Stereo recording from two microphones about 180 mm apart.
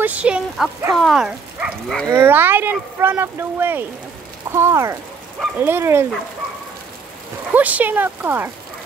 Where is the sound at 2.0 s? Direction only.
15° right (ahead or behind).